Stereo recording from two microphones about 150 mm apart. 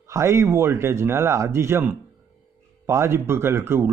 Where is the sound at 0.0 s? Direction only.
20° right (ahead or behind).